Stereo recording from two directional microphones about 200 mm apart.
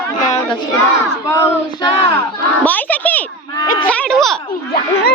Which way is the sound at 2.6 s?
10° left (ahead or behind).